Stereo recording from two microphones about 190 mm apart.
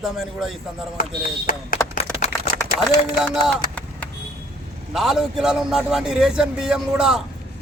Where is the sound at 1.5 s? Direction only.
45° left (ahead or behind).